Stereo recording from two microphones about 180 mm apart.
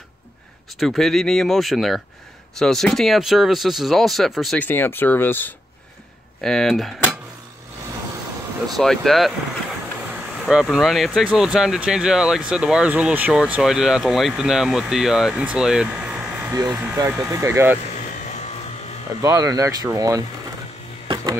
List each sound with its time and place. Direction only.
0.7 s speech: centre (ahead or behind)
8.7 s speech: centre (ahead or behind)
19.2 s speech: 20° right (ahead or behind)